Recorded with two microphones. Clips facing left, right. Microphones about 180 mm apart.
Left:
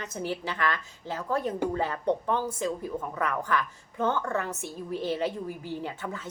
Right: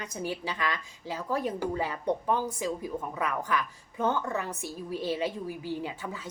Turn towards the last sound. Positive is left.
turn(degrees=-10)  # may be behind; listen again after turning